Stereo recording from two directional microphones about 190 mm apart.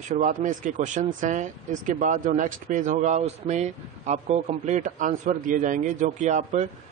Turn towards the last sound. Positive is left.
turn(degrees=-40)  # may be behind; listen again after turning